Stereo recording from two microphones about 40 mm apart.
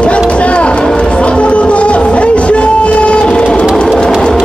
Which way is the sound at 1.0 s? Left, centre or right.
Left.